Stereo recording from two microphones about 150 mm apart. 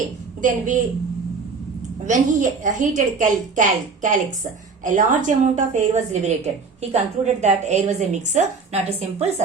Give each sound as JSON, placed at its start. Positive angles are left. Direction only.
{"t": 0.4, "sound": "a woman's voice", "side_deg": -60}
{"t": 2.0, "sound": "a woman's voice", "side_deg": -60}